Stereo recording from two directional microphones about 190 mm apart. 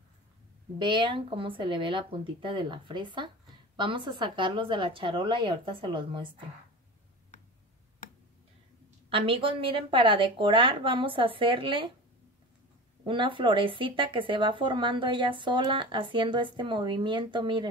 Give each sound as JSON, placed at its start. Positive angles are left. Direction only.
{"t": 0.7, "sound": "speech", "side_deg": -25}
{"t": 9.1, "sound": "speech", "side_deg": -30}
{"t": 13.0, "sound": "speech", "side_deg": -25}